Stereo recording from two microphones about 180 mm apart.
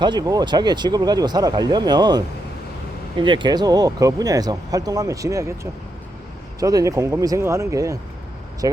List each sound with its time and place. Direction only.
0.0 s speech: 25° right (ahead or behind)
6.6 s speech: 20° right (ahead or behind)